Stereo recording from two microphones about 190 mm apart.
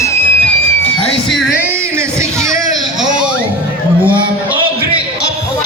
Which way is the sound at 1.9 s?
15° right (ahead or behind).